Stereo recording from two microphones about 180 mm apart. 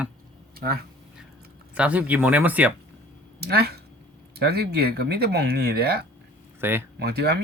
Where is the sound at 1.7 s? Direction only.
10° right (ahead or behind).